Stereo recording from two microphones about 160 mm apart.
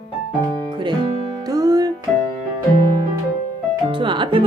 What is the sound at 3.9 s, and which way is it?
Music, 30° right (ahead or behind).